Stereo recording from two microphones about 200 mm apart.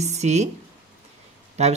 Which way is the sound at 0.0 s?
35° right (ahead or behind).